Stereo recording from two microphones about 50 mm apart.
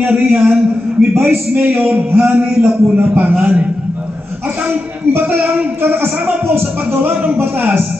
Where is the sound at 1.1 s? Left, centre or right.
Right.